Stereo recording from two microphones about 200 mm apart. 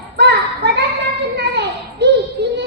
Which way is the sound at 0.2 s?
55° right (ahead or behind).